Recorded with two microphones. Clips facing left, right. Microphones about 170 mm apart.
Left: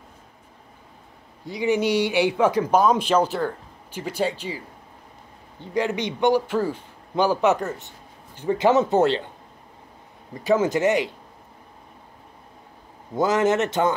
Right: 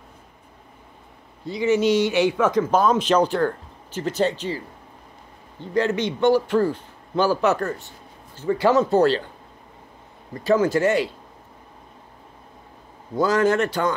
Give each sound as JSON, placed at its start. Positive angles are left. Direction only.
{"t": 1.4, "sound": "a man's voice", "side_deg": 15}
{"t": 5.7, "sound": "a man's voice", "side_deg": 15}
{"t": 10.3, "sound": "a man's voice", "side_deg": 15}
{"t": 13.1, "sound": "speech", "side_deg": 20}